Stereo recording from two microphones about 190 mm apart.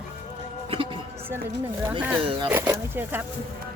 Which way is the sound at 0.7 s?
30° right (ahead or behind).